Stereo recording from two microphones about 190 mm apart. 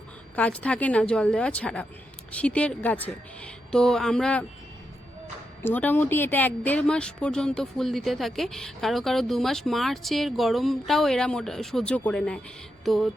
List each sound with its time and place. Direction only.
0.3 s speech: 5° left (ahead or behind)
5.6 s speech: 10° left (ahead or behind)
12.8 s music: centre (ahead or behind)